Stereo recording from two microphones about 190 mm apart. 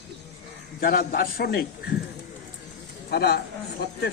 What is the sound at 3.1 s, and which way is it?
A man's voice, 55° left (ahead or behind).